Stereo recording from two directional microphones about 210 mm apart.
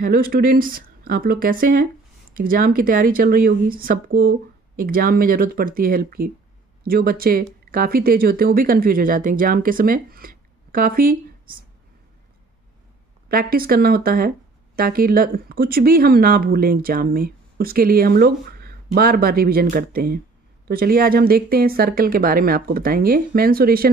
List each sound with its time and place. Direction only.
0.0 s speech: 45° right (ahead or behind)
13.3 s speech: 45° right (ahead or behind)